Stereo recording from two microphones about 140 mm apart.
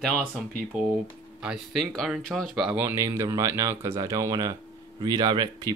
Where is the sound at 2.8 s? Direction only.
15° right (ahead or behind).